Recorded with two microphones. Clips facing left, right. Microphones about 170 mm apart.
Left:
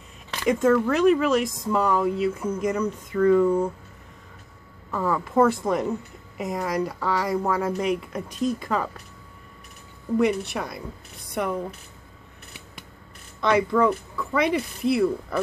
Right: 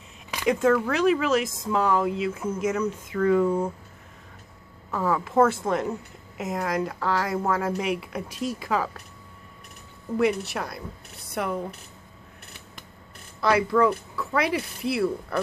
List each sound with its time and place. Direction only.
0.5 s a woman's voice: centre (ahead or behind)
4.9 s a woman's voice: centre (ahead or behind)
10.1 s a woman's voice: centre (ahead or behind)
13.4 s a woman's voice: 5° right (ahead or behind)